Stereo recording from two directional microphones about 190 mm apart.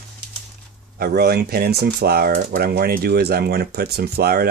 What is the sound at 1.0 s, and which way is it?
Speech, 55° right (ahead or behind).